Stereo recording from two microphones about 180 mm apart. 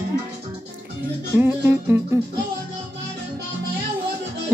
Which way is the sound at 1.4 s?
15° right (ahead or behind).